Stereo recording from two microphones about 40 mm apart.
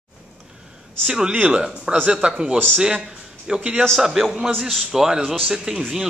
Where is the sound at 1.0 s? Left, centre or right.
Centre.